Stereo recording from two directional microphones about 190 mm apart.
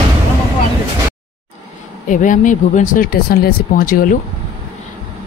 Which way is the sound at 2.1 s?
40° left (ahead or behind).